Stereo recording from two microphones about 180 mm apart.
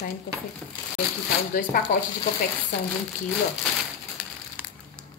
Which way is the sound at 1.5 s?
50° left (ahead or behind).